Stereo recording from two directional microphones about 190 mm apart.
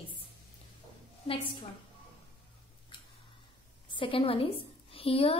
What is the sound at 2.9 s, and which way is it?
Tick-tock, 25° left (ahead or behind).